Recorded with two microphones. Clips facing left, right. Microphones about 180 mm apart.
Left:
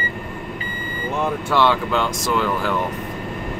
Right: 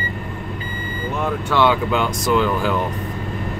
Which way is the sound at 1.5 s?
5° right (ahead or behind).